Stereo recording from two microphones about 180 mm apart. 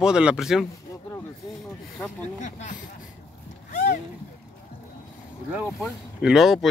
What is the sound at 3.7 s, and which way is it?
Vehicle, 45° left (ahead or behind).